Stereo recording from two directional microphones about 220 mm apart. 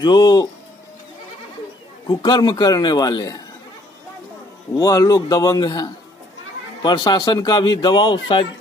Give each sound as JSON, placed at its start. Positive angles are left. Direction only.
{"t": 0.0, "sound": "speech", "side_deg": 20}
{"t": 2.0, "sound": "a man's voice", "side_deg": 20}
{"t": 4.7, "sound": "a man's voice", "side_deg": 15}